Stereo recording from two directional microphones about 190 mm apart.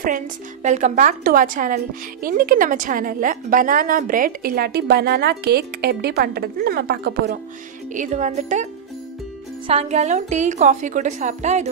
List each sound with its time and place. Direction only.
0.0 s a woman's voice: 40° right (ahead or behind); by 7.3 s 60° right (ahead or behind)
7.9 s a woman's voice: 40° right (ahead or behind)
9.7 s a woman's voice: 35° right (ahead or behind)